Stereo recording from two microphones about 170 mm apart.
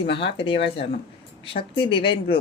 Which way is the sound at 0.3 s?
30° left (ahead or behind).